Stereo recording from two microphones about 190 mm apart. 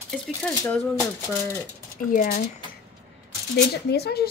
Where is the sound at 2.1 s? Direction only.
40° left (ahead or behind).